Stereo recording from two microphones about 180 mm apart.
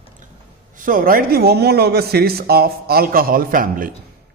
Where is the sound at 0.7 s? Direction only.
50° right (ahead or behind).